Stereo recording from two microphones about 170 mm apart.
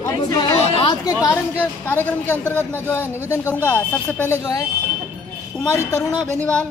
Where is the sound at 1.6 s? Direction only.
10° left (ahead or behind).